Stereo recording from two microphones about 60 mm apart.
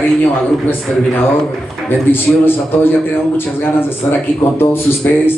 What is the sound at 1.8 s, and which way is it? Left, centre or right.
A man's voice, left.